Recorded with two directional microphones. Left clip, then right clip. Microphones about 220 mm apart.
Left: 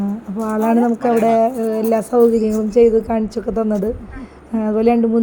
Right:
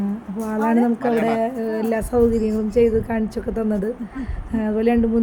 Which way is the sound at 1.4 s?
10° left (ahead or behind).